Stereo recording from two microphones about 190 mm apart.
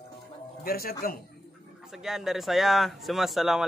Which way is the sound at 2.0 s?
Centre (ahead or behind).